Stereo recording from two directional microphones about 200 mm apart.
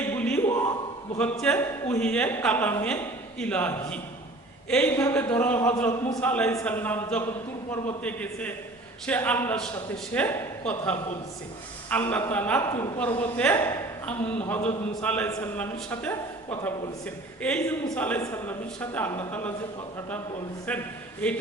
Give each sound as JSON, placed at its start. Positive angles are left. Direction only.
{"t": 0.0, "sound": "a sound", "side_deg": 10}
{"t": 1.2, "sound": "a woman's voice", "side_deg": 5}
{"t": 6.1, "sound": "a woman's voice", "side_deg": 5}
{"t": 20.7, "sound": "a woman's voice", "side_deg": 5}